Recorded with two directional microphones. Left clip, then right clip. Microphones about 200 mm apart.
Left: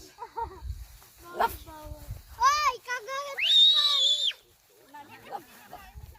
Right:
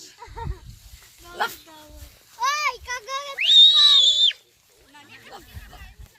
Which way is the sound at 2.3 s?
55° left (ahead or behind).